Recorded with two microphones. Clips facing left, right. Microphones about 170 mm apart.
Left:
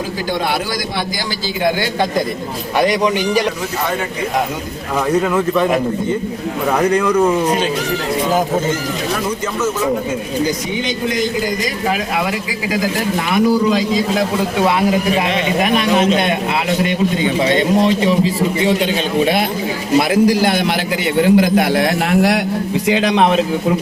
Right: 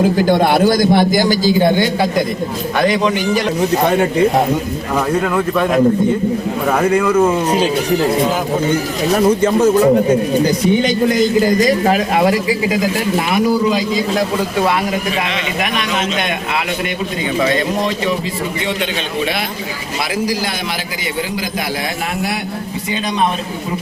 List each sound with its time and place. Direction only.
0.2 s a man's voice: 55° right (ahead or behind); by 1.8 s 30° right (ahead or behind)
2.8 s a man's voice: 15° left (ahead or behind)
5.2 s speech: centre (ahead or behind)
13.7 s speech: 5° right (ahead or behind)
17.4 s speech: 25° left (ahead or behind)
21.2 s a man's voice: 60° left (ahead or behind)
22.9 s a man's voice: 85° left